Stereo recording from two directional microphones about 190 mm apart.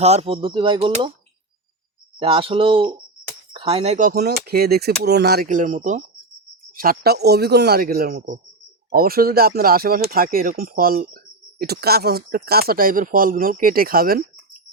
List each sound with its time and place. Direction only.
0.0 s speech: 35° right (ahead or behind)
2.1 s speech: 30° right (ahead or behind)
6.7 s speech: 55° right (ahead or behind)